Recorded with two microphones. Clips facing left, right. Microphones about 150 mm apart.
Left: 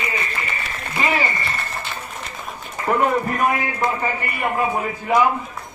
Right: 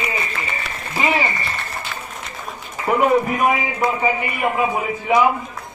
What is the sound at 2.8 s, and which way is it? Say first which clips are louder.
A man's voice: right 3 dB; 10° right (ahead or behind).